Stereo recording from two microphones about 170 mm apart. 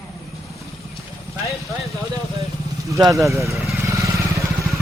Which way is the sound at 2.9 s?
20° right (ahead or behind).